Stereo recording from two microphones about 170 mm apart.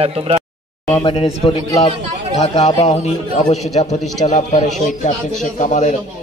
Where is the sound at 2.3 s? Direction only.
40° left (ahead or behind).